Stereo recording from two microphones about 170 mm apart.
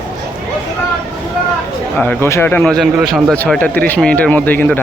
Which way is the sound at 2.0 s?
10° left (ahead or behind).